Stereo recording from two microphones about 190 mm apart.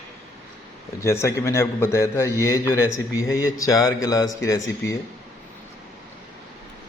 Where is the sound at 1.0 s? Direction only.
15° left (ahead or behind).